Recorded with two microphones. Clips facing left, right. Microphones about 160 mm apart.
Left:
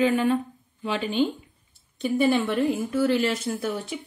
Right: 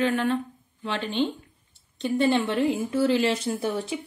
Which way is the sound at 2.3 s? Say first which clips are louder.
Even; 20° right (ahead or behind).